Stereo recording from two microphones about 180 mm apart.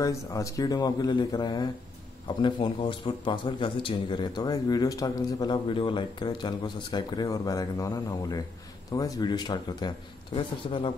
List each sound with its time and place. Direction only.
0.0 s a man's voice: 20° left (ahead or behind)